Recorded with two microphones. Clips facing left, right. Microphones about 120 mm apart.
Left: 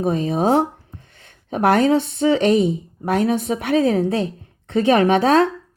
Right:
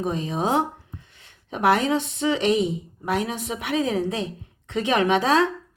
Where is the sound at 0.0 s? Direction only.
45° left (ahead or behind).